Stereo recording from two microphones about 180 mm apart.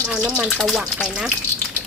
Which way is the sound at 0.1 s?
5° right (ahead or behind).